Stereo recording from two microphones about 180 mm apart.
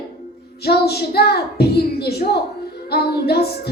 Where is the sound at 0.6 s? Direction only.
60° left (ahead or behind).